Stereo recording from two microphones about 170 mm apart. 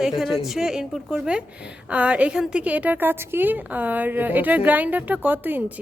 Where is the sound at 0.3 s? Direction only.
Centre (ahead or behind).